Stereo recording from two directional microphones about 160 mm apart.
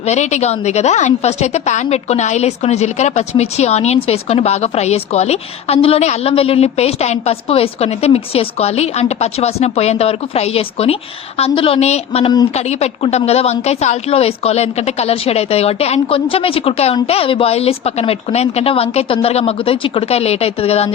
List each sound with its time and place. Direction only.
0.0 s a woman's voice: 45° left (ahead or behind)